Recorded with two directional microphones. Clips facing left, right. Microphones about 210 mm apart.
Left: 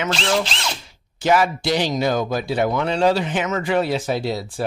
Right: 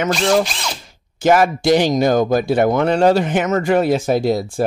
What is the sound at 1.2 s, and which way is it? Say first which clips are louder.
Speech: right 4 dB; 45° right (ahead or behind).